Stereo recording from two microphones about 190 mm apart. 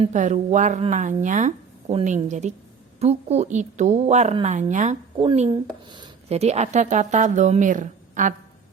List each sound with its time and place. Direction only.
0.0 s speech: 40° right (ahead or behind)
5.1 s speech: 25° right (ahead or behind); by 8.3 s 40° right (ahead or behind)